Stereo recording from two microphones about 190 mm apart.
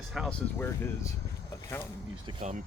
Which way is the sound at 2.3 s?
40° right (ahead or behind).